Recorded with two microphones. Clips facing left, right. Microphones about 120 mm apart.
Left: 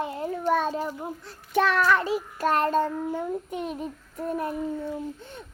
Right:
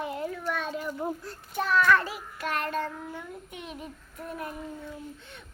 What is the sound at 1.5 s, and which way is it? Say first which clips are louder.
Child singing: left 4 dB; 75° left (ahead or behind).